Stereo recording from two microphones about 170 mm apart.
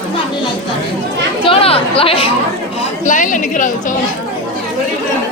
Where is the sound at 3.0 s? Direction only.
50° left (ahead or behind).